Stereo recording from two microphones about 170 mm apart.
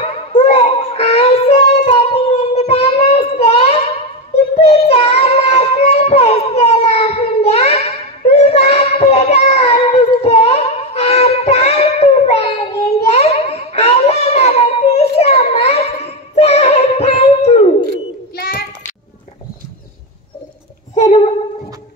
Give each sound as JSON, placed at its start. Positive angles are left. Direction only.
{"t": 0.0, "sound": "child singing", "side_deg": 35}
{"t": 18.3, "sound": "child singing", "side_deg": 60}
{"t": 20.9, "sound": "a sound", "side_deg": 40}